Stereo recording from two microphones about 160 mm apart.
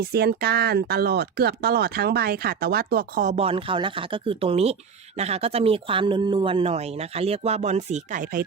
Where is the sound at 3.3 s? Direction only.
35° right (ahead or behind).